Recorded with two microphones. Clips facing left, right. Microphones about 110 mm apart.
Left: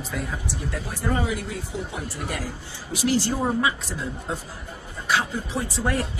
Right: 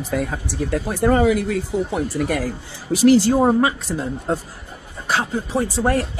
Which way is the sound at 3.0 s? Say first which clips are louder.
Right 10 dB; 90° right.